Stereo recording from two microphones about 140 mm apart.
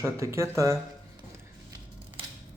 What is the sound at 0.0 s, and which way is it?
Speech, 20° right (ahead or behind).